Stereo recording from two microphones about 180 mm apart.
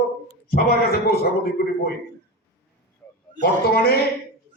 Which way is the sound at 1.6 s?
60° left (ahead or behind).